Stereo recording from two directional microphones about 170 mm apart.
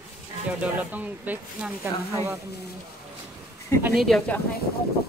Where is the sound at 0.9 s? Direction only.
10° right (ahead or behind).